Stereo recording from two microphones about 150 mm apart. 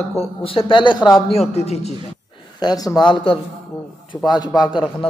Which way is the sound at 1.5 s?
45° left (ahead or behind).